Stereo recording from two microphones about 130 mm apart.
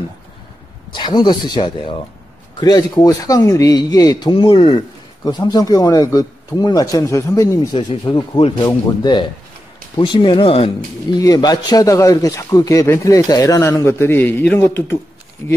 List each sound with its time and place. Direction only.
0.9 s speech: 35° left (ahead or behind)
7.7 s speech: 35° left (ahead or behind)
8.4 s speech: 45° left (ahead or behind)
8.6 s speech: 35° left (ahead or behind)
11.1 s speech: 30° left (ahead or behind)